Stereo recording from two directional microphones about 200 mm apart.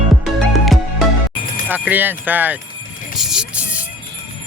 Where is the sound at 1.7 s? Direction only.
10° right (ahead or behind).